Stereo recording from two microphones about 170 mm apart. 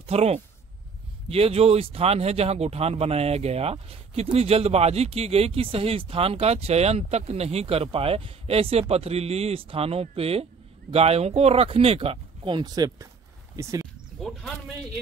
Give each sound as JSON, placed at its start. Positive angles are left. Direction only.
{"t": 0.0, "sound": "speech", "side_deg": -35}